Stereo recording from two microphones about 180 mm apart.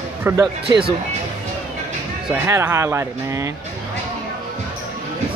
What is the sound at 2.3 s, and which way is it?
Speech, 15° right (ahead or behind).